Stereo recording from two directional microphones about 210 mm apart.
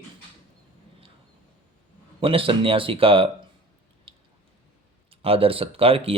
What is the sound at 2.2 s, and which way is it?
Speech, 25° right (ahead or behind).